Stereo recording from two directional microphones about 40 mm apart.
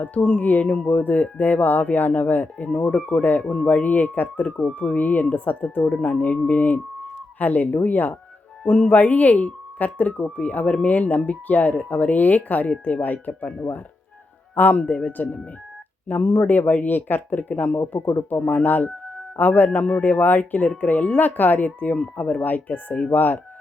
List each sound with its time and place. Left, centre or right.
0.0 s speech: left
3.4 s speech: left
8.6 s speech: left
9.0 s speech: left
14.5 s a man's voice: left
14.8 s speech: left
18.3 s speech: left
18.6 s speech: left